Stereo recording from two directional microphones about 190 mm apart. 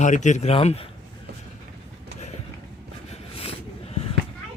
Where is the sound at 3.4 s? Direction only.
30° left (ahead or behind).